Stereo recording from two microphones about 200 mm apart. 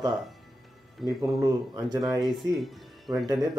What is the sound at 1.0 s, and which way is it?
Speech, centre (ahead or behind).